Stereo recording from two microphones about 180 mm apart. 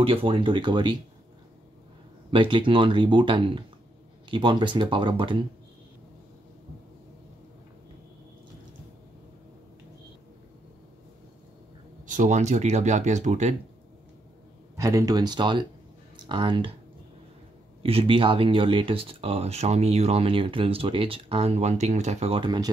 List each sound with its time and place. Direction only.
0.0 s speech: 30° right (ahead or behind)
2.3 s speech: 25° right (ahead or behind)
12.1 s speech: 40° right (ahead or behind)
14.8 s speech: 20° right (ahead or behind)
17.8 s speech: 30° right (ahead or behind)